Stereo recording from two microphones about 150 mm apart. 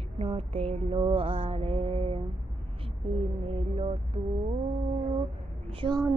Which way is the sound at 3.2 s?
40° right (ahead or behind).